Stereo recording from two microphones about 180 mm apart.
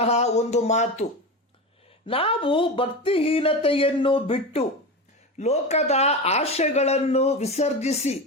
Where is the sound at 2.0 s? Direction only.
30° left (ahead or behind).